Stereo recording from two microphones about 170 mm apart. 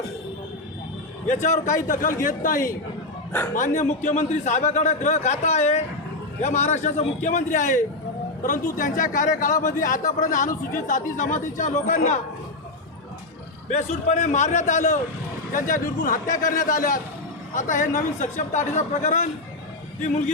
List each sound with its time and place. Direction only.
1.3 s speech: 45° left (ahead or behind)
13.7 s speech: 45° left (ahead or behind)